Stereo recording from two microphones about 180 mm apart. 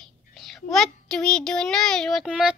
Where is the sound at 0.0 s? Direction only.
Centre (ahead or behind).